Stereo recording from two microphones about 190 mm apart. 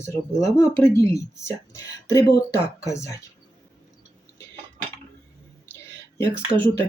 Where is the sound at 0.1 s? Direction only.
15° left (ahead or behind).